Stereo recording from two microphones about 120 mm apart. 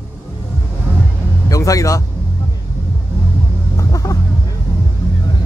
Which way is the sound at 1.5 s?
30° left (ahead or behind).